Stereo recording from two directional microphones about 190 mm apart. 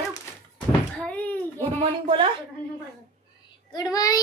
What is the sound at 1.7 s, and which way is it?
Speech, 30° right (ahead or behind).